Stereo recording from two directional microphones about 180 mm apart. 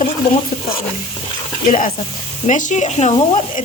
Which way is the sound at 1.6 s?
45° left (ahead or behind).